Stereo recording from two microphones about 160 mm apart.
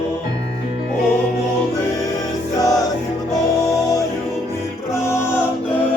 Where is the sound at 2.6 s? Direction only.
25° left (ahead or behind).